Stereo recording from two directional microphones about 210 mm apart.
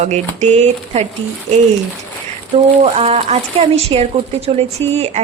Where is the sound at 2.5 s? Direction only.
30° right (ahead or behind).